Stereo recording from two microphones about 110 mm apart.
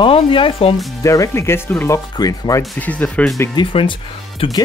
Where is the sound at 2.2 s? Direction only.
30° left (ahead or behind).